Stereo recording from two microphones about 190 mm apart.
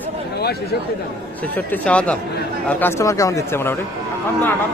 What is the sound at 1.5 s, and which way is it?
Speech, 5° left (ahead or behind).